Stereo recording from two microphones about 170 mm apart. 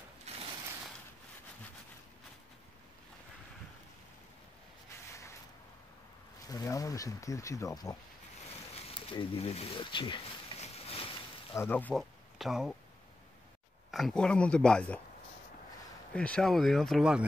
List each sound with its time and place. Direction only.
0.3 s a sound: 40° right (ahead or behind)
6.5 s speech: 20° left (ahead or behind)
8.7 s a sound: 35° left (ahead or behind)
11.6 s speech: 10° left (ahead or behind)
13.8 s speech: centre (ahead or behind)
16.2 s speech: 5° left (ahead or behind)